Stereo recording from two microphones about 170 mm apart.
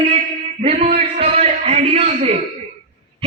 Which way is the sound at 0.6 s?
35° right (ahead or behind).